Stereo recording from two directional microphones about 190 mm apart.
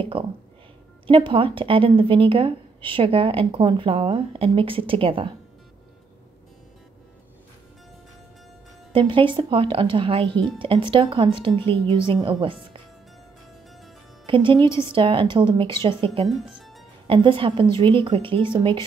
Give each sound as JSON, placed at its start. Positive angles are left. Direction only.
{"t": 0.1, "sound": "a woman's voice", "side_deg": -30}
{"t": 8.9, "sound": "a woman's voice", "side_deg": -25}
{"t": 14.2, "sound": "a woman's voice", "side_deg": -25}
{"t": 16.3, "sound": "speech", "side_deg": 0}
{"t": 17.1, "sound": "a woman's voice", "side_deg": -25}